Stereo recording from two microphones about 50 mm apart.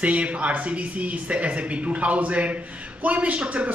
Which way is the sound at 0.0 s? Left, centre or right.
Right.